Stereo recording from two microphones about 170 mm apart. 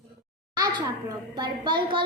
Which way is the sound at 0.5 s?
20° right (ahead or behind).